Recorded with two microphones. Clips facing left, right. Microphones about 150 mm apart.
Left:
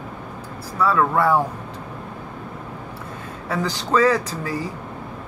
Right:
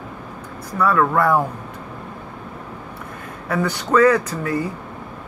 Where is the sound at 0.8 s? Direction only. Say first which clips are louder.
Right 1 dB; 25° left (ahead or behind).